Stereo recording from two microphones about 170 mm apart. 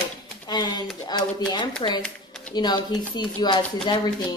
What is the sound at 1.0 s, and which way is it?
Speech, 25° left (ahead or behind).